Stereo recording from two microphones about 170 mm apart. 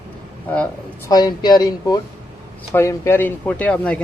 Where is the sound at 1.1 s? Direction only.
25° left (ahead or behind).